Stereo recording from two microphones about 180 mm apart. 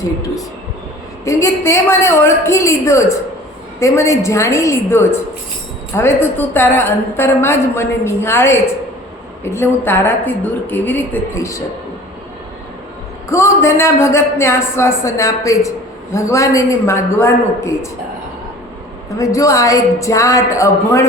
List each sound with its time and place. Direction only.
1.2 s a woman's voice: 15° left (ahead or behind)
13.2 s a woman's voice: 15° left (ahead or behind)
19.2 s a woman's voice: 20° left (ahead or behind)